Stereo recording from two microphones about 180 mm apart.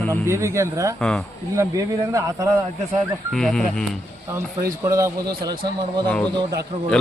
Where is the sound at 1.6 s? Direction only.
15° right (ahead or behind).